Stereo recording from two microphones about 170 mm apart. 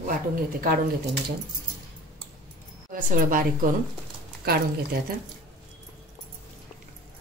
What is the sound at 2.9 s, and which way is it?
Speech, 50° right (ahead or behind).